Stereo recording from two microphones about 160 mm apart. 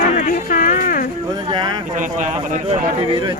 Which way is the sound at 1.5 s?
30° right (ahead or behind).